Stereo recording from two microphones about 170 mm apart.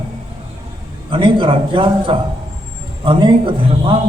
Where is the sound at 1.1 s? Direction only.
30° right (ahead or behind).